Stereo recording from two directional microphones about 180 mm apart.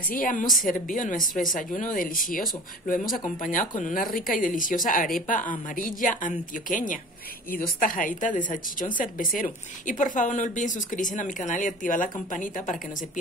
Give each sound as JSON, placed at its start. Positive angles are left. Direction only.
{"t": 0.1, "sound": "a woman's voice", "side_deg": 50}